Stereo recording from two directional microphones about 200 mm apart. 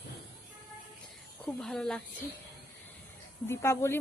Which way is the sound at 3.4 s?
15° left (ahead or behind).